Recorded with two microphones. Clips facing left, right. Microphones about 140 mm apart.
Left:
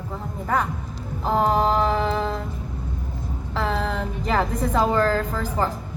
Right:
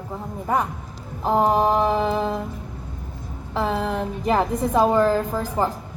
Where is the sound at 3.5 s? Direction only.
15° right (ahead or behind).